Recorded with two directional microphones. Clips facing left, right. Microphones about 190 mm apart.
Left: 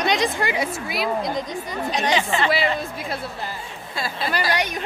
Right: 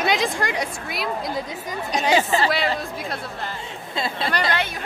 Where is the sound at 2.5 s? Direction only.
Centre (ahead or behind).